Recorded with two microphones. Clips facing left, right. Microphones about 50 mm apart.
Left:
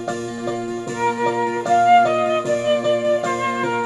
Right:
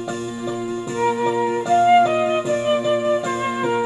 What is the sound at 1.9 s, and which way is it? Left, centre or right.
Flute, centre.